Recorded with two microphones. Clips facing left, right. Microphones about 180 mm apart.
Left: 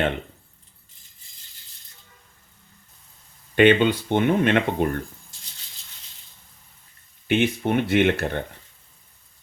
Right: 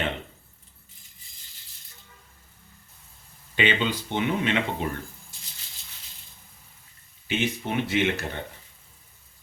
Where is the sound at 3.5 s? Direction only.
55° left (ahead or behind).